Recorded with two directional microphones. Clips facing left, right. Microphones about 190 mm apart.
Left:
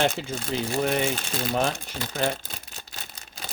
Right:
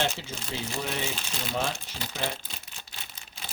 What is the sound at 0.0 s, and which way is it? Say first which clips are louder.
Speech: left 6 dB; 55° left (ahead or behind).